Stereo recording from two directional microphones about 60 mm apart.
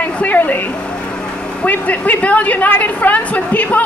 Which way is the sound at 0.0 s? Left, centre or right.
Left.